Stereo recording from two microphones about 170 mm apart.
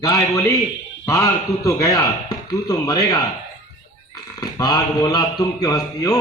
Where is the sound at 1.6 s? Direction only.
20° left (ahead or behind).